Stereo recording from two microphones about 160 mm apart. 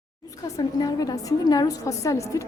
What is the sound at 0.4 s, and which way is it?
A woman's voice, 25° left (ahead or behind).